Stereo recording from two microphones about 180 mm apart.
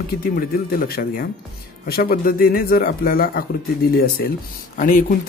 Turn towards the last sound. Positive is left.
turn(degrees=45)  # may be behind; listen again after turning